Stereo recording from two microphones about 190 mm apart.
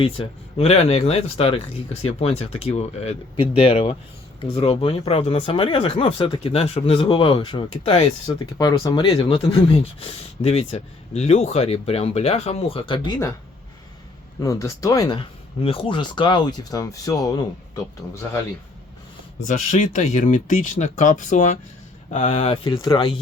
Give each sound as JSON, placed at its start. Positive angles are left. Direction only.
{"t": 0.0, "sound": "speech", "side_deg": 30}
{"t": 14.4, "sound": "speech", "side_deg": 15}
{"t": 19.5, "sound": "speech", "side_deg": 40}